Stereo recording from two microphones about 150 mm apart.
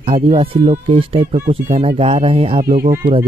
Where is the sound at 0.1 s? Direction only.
40° right (ahead or behind).